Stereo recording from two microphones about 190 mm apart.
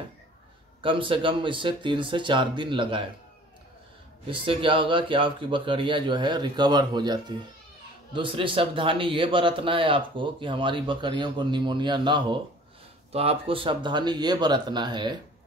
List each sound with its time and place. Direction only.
0.8 s a man's voice: 25° right (ahead or behind)
4.3 s a man's voice: 25° right (ahead or behind)